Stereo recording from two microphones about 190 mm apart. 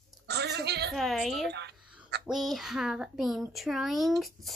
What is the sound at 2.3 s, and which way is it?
A child's voice, centre (ahead or behind).